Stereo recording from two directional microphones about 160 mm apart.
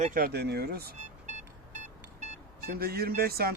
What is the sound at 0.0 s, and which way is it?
Speech, 60° right (ahead or behind).